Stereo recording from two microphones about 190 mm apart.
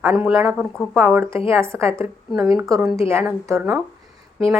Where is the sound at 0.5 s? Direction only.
5° left (ahead or behind).